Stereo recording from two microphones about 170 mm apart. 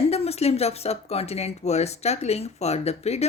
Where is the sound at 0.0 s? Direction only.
35° left (ahead or behind).